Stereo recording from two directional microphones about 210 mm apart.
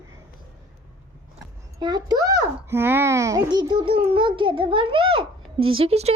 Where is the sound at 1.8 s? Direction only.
20° right (ahead or behind).